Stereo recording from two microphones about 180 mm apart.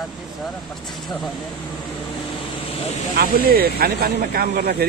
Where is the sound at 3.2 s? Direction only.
60° right (ahead or behind).